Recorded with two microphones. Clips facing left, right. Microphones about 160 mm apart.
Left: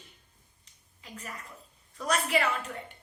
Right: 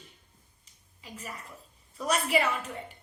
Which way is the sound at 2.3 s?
10° right (ahead or behind).